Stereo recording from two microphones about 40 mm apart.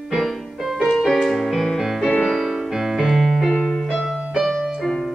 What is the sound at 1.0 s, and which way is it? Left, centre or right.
Keyboard, centre.